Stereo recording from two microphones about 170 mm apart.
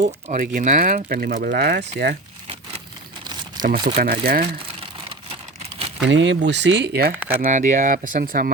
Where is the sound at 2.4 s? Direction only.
35° right (ahead or behind).